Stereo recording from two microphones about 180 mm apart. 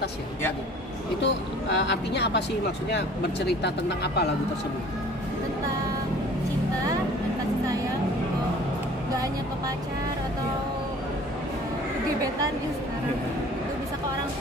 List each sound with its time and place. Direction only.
1.2 s speech: 75° left (ahead or behind)